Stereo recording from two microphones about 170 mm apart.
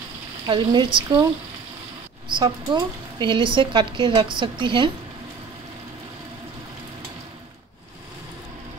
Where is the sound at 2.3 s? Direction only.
25° right (ahead or behind).